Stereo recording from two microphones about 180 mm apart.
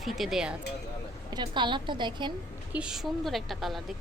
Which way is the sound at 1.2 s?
25° right (ahead or behind).